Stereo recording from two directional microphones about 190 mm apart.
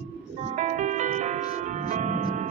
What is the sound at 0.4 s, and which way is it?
Music, 40° right (ahead or behind).